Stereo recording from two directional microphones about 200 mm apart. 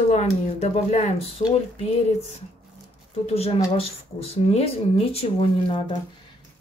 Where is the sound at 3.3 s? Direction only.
30° left (ahead or behind).